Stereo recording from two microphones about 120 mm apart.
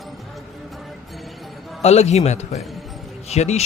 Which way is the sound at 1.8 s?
60° left (ahead or behind).